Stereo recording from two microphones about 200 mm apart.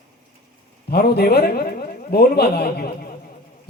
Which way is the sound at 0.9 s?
50° left (ahead or behind).